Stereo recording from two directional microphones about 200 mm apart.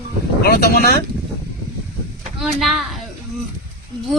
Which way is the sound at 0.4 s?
50° left (ahead or behind).